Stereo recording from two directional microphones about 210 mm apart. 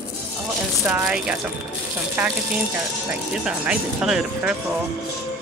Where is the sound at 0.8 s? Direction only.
5° right (ahead or behind).